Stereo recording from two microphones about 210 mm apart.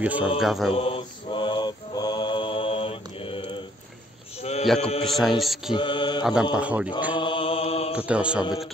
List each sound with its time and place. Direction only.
0.0 s mantra: 5° right (ahead or behind)
0.4 s speech: centre (ahead or behind)
0.7 s mantra: 25° left (ahead or behind)
4.4 s a sound: 30° left (ahead or behind)
4.7 s mantra: 30° left (ahead or behind)
5.0 s speech: centre (ahead or behind)
5.7 s mantra: 25° left (ahead or behind)
6.5 s speech: 5° right (ahead or behind)
7.2 s mantra: 25° left (ahead or behind)
7.9 s speech: 5° right (ahead or behind)